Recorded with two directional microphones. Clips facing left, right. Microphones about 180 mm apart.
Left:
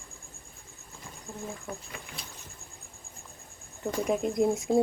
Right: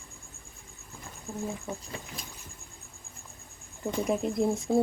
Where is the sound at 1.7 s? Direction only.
25° right (ahead or behind).